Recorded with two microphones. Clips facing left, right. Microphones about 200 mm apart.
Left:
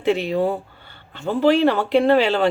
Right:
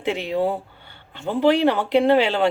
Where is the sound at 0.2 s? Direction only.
15° right (ahead or behind).